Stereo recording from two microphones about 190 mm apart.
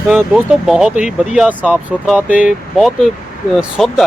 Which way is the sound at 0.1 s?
5° right (ahead or behind).